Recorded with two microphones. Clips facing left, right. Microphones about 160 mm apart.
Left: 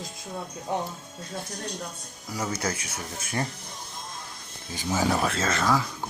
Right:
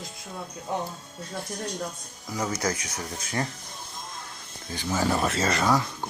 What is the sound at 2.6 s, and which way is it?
Speech, 30° left (ahead or behind).